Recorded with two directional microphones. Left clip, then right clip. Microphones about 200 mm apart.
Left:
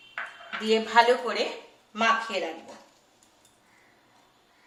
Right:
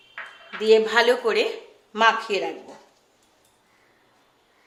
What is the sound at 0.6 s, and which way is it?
Speech, 55° right (ahead or behind).